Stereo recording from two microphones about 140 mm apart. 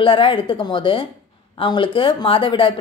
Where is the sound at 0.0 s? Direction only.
40° left (ahead or behind).